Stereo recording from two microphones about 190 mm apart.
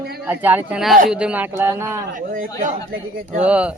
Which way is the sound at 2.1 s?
45° right (ahead or behind).